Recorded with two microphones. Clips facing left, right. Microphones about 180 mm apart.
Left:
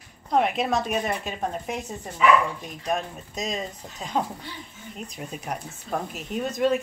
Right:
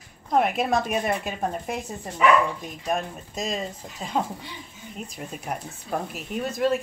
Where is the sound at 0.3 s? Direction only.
5° right (ahead or behind).